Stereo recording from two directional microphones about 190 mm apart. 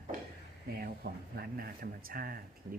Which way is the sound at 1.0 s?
55° right (ahead or behind).